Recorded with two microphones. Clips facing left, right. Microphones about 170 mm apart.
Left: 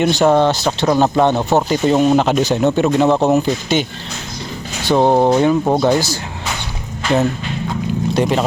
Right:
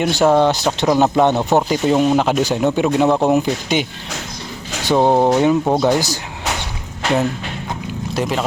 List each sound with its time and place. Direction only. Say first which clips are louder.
0.0 s speech: left 1 dB; 10° right (ahead or behind)
1.8 s speech: left 2 dB; centre (ahead or behind)
4.9 s speech: left 1 dB; 10° right (ahead or behind)
8.1 s speech: left 3 dB; centre (ahead or behind)